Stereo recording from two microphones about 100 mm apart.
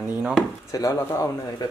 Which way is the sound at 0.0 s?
10° right (ahead or behind).